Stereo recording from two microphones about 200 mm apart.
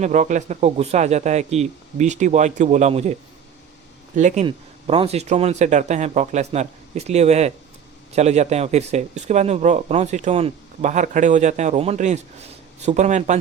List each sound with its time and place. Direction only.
0.0 s speech: 40° right (ahead or behind)